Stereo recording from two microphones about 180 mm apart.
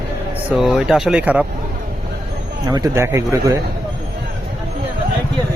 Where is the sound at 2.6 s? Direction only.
20° right (ahead or behind).